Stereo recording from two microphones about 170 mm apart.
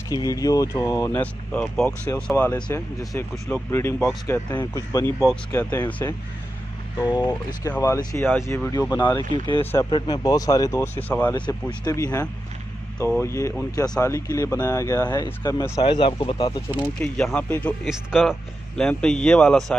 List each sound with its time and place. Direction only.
0.1 s speech: 20° left (ahead or behind); by 3.2 s 5° left (ahead or behind)
3.2 s speech: 15° left (ahead or behind)
7.0 s speech: 25° left (ahead or behind)
9.6 s speech: 15° left (ahead or behind)
9.8 s speech: 25° left (ahead or behind); by 11.3 s 10° left (ahead or behind)
11.3 s speech: 25° left (ahead or behind)
16.8 s speech: 10° left (ahead or behind)
17.8 s speech: centre (ahead or behind)